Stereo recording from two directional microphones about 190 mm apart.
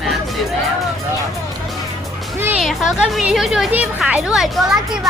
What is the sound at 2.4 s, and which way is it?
Speech, 5° right (ahead or behind).